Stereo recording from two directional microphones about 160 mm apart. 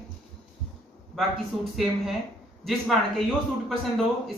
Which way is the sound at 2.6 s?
5° left (ahead or behind).